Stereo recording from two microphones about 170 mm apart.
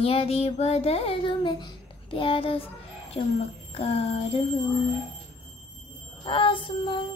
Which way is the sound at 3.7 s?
35° left (ahead or behind).